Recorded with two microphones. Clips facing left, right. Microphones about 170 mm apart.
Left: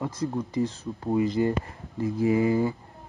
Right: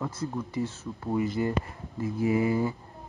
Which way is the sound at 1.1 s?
20° left (ahead or behind).